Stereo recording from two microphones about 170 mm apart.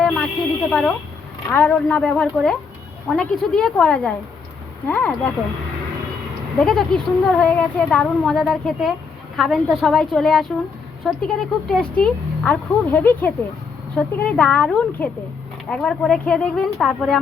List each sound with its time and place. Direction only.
0.0 s snake: centre (ahead or behind)
0.7 s speech: centre (ahead or behind)
6.6 s speech: 5° left (ahead or behind)